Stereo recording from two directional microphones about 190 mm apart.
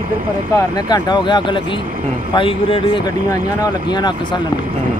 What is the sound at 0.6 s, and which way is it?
Speech, 20° left (ahead or behind).